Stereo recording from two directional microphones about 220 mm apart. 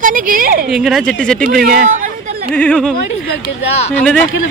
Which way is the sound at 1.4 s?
40° right (ahead or behind).